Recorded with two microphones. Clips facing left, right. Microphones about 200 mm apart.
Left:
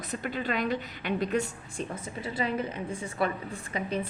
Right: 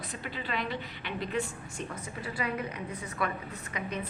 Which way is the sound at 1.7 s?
25° left (ahead or behind).